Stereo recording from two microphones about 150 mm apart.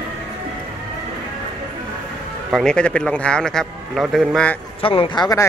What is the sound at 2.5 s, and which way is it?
A man's voice, 5° left (ahead or behind).